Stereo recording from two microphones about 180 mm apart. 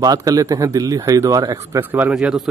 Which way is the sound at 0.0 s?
20° right (ahead or behind).